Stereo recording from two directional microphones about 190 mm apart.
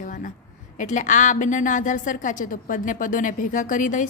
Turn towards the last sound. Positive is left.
turn(degrees=45)  # may be behind; listen again after turning